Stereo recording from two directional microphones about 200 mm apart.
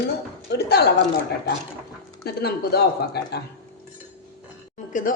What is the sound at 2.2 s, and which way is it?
Speech, 50° left (ahead or behind).